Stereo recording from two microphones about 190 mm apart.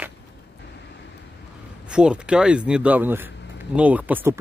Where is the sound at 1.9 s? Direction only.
5° right (ahead or behind).